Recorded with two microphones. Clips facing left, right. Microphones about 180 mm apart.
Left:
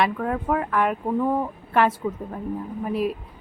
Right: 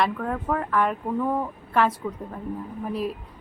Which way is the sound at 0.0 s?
5° left (ahead or behind).